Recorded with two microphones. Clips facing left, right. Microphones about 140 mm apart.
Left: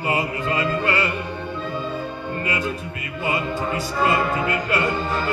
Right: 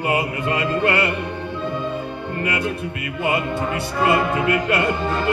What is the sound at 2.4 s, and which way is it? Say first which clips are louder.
Music: right 3 dB; 65° right (ahead or behind).